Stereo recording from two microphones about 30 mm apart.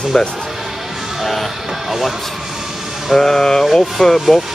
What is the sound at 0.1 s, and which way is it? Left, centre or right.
Speech, centre.